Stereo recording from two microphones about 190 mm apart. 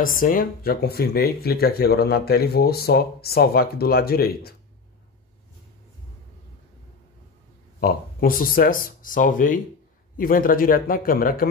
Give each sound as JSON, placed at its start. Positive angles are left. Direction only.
{"t": 0.0, "sound": "speech", "side_deg": 45}
{"t": 7.8, "sound": "speech", "side_deg": 50}